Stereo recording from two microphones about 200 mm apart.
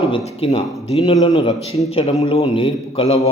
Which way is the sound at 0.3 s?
30° left (ahead or behind).